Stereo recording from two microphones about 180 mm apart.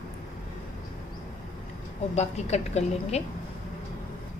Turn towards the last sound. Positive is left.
turn(degrees=35)  # may be behind; listen again after turning